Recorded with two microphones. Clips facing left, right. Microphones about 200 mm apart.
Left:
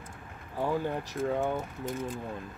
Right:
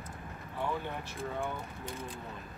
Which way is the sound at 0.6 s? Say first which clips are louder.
Left 6 dB; 40° left (ahead or behind).